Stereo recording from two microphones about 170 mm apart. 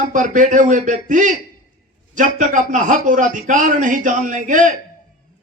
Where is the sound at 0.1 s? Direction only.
50° right (ahead or behind).